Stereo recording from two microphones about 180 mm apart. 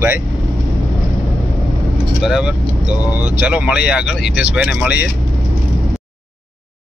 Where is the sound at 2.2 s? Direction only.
5° right (ahead or behind).